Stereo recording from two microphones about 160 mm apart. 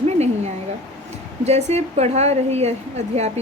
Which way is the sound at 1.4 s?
45° right (ahead or behind).